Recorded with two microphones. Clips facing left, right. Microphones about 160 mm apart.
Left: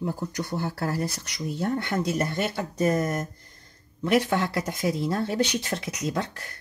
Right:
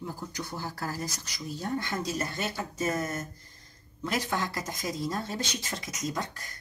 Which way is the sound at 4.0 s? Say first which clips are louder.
Left 8 dB; 60° left (ahead or behind).